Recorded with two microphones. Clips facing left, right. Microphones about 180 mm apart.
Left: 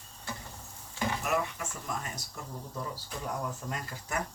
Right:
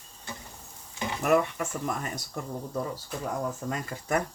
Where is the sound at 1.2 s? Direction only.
55° right (ahead or behind).